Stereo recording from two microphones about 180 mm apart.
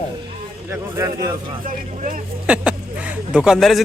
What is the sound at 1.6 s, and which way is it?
Speech, 50° right (ahead or behind).